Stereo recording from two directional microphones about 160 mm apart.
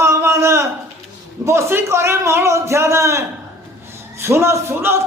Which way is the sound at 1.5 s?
15° right (ahead or behind).